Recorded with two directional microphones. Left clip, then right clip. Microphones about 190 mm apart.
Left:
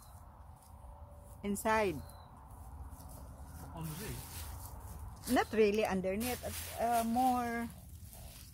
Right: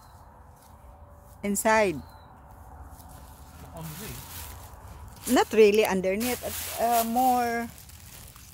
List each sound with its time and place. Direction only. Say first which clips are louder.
1.4 s speech: right 10 dB; 40° right (ahead or behind)
5.3 s speech: right 11 dB; 60° right (ahead or behind)